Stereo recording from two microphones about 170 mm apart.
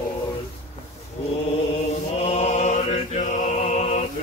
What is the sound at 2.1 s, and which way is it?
Mantra, 40° left (ahead or behind).